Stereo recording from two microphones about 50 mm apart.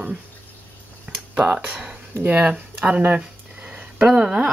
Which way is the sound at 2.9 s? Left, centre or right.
Right.